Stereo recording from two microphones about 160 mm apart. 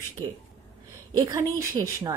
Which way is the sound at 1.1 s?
25° right (ahead or behind).